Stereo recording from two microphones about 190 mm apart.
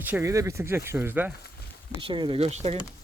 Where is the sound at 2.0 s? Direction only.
25° right (ahead or behind).